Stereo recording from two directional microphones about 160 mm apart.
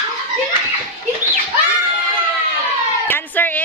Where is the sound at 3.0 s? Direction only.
10° left (ahead or behind).